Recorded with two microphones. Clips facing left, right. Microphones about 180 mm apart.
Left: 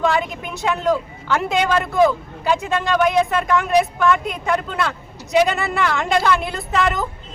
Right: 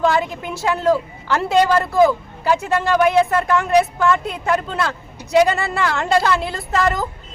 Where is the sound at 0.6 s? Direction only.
Centre (ahead or behind).